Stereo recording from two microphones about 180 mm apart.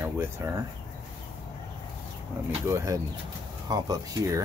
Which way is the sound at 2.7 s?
15° right (ahead or behind).